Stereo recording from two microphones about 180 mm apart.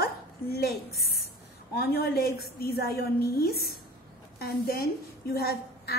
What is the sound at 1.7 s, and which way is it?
A woman's voice, 60° left (ahead or behind).